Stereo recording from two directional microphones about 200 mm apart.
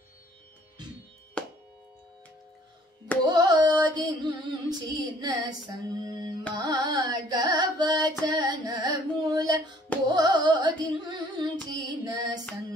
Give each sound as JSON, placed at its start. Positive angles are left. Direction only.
{"t": 3.3, "sound": "female singing", "side_deg": -20}
{"t": 6.5, "sound": "carnatic music", "side_deg": -20}
{"t": 10.1, "sound": "music", "side_deg": -20}